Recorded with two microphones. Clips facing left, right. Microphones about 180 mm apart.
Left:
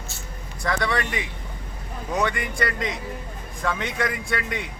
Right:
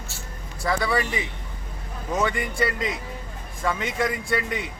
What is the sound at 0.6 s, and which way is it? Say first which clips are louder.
A man's voice: right 1 dB; centre (ahead or behind).